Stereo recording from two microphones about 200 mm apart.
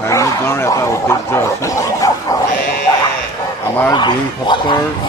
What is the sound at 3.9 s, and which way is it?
Speech, 20° left (ahead or behind).